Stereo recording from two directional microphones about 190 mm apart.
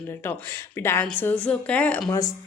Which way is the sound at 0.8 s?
10° left (ahead or behind).